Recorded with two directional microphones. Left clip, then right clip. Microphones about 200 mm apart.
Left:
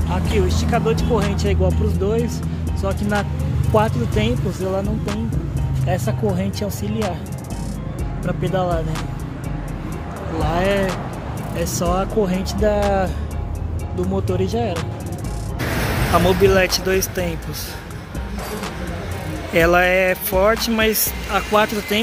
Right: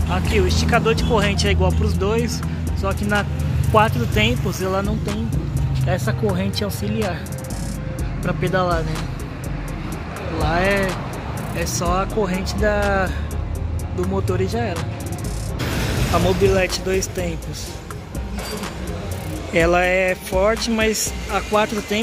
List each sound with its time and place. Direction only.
0.1 s speech: centre (ahead or behind)
8.3 s speech: 5° right (ahead or behind)
10.4 s speech: 10° left (ahead or behind)
11.6 s speech: 20° left (ahead or behind)
14.4 s speech: 10° left (ahead or behind)
16.1 s speech: centre (ahead or behind)
19.5 s speech: 5° right (ahead or behind)